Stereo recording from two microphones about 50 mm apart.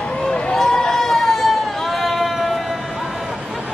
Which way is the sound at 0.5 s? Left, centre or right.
Centre.